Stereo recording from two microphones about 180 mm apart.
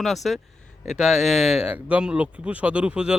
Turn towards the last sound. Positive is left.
turn(degrees=-5)  # may be behind; listen again after turning